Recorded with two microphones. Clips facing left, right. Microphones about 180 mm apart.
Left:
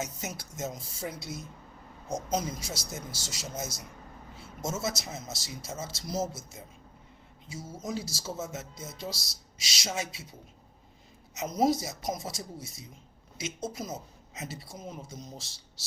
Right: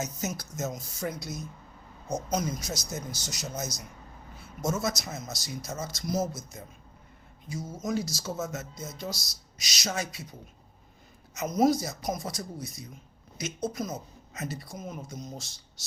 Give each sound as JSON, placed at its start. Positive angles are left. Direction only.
{"t": 0.0, "sound": "speech", "side_deg": 25}
{"t": 4.4, "sound": "a sound", "side_deg": 25}
{"t": 4.9, "sound": "speech", "side_deg": 25}
{"t": 7.8, "sound": "speech", "side_deg": 30}
{"t": 11.3, "sound": "speech", "side_deg": 25}